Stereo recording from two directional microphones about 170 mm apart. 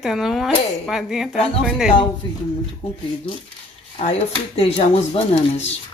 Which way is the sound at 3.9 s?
35° left (ahead or behind).